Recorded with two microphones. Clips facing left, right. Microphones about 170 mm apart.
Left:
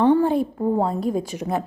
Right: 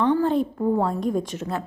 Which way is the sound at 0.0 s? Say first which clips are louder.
Left 3 dB; 15° left (ahead or behind).